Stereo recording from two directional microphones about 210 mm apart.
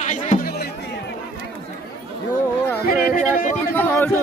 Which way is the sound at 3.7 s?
10° left (ahead or behind).